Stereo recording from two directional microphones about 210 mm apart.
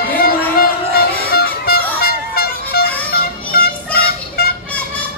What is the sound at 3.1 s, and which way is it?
Music, 45° left (ahead or behind).